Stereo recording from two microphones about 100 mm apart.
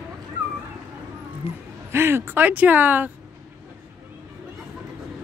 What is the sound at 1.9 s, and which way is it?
Speech, 25° right (ahead or behind).